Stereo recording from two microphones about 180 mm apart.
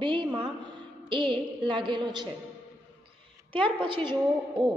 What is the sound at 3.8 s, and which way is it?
Speech, 25° right (ahead or behind).